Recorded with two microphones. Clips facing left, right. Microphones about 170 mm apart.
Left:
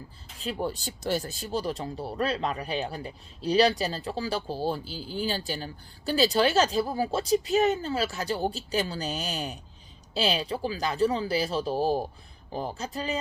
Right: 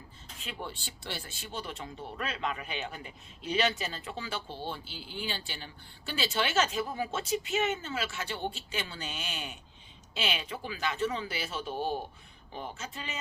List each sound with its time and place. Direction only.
0.3 s speech: 40° left (ahead or behind)